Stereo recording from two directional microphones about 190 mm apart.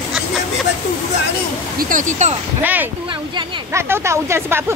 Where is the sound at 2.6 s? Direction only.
10° right (ahead or behind).